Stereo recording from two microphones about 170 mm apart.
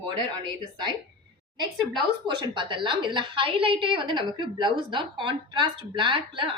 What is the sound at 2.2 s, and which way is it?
A woman's voice, 25° right (ahead or behind).